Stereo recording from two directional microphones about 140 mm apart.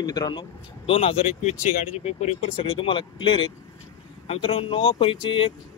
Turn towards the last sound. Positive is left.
turn(degrees=40)  # may be behind; listen again after turning